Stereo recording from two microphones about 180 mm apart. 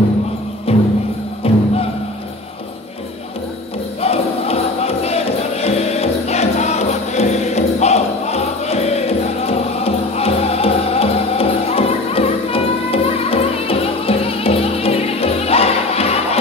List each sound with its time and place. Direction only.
0.7 s music: 35° left (ahead or behind)
4.0 s music: 35° left (ahead or behind)